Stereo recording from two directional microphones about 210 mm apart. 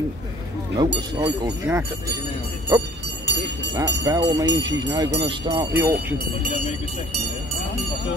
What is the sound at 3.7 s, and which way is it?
Speech, 15° right (ahead or behind).